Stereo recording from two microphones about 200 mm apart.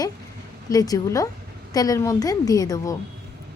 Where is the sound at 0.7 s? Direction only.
20° left (ahead or behind).